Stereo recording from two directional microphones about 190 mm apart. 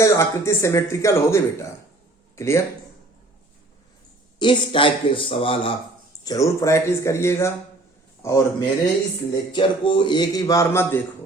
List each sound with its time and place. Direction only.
0.0 s a man's voice: 15° left (ahead or behind)
4.4 s a man's voice: 25° left (ahead or behind)
6.2 s a man's voice: 15° left (ahead or behind)